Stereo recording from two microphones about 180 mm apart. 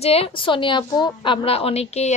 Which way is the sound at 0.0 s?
35° left (ahead or behind).